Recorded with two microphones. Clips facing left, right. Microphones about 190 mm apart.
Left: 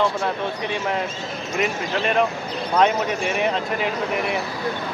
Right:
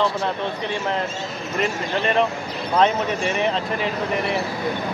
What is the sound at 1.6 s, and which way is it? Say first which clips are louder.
Speech: even; 5° left (ahead or behind).